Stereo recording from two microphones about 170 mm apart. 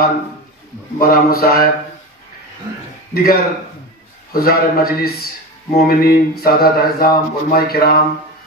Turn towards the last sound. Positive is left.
turn(degrees=65)  # may be behind; listen again after turning